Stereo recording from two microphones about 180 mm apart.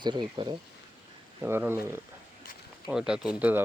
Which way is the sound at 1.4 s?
15° right (ahead or behind).